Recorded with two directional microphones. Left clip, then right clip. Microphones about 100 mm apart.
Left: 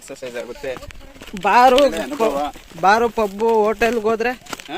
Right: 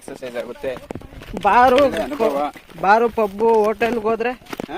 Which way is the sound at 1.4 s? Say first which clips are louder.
Left 1 dB; 35° left (ahead or behind).